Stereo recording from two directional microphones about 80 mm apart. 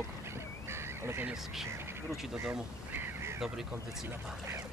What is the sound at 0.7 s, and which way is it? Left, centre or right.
Goose, right.